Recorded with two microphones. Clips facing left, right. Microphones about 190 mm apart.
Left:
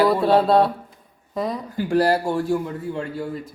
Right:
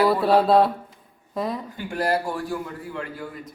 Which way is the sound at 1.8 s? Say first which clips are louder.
Left 7 dB; 30° left (ahead or behind).